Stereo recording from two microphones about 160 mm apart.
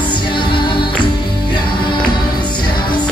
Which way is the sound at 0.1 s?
30° left (ahead or behind).